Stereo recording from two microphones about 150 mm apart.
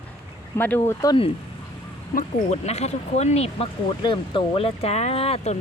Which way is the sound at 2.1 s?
50° left (ahead or behind).